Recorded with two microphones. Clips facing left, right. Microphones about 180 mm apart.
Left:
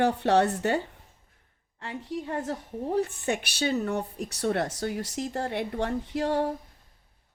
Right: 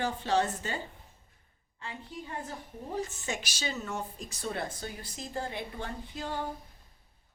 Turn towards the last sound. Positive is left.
turn(degrees=75)  # may be behind; listen again after turning